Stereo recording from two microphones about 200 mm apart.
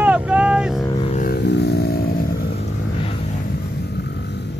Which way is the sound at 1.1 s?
50° left (ahead or behind).